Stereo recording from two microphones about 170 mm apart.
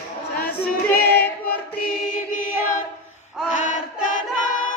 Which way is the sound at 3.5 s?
45° left (ahead or behind).